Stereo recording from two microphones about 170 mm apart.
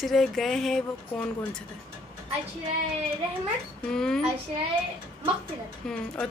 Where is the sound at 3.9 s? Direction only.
5° left (ahead or behind).